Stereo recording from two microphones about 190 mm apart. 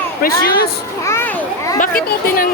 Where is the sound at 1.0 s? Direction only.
15° left (ahead or behind).